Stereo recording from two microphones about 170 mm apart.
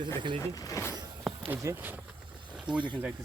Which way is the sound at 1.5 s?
15° right (ahead or behind).